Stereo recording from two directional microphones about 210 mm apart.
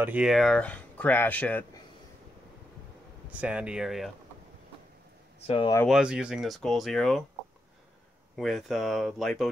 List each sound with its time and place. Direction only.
0.0 s speech: 5° right (ahead or behind)
3.3 s speech: 5° right (ahead or behind)
5.5 s speech: 25° left (ahead or behind)
5.9 s speech: 5° right (ahead or behind)
8.4 s speech: centre (ahead or behind)